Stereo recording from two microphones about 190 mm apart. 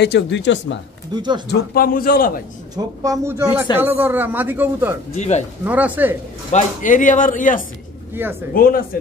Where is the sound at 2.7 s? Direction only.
20° right (ahead or behind).